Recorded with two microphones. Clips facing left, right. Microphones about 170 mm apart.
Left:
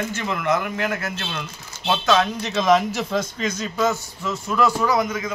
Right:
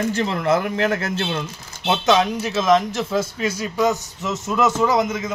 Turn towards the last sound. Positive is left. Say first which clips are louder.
# right 2 dB
turn(degrees=-25)  # may be behind; listen again after turning